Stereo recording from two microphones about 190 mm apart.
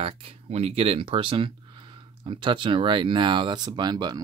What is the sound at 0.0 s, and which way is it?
Speech, 30° right (ahead or behind).